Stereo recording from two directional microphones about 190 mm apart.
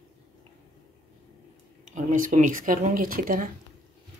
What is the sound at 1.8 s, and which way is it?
Speech, 40° right (ahead or behind).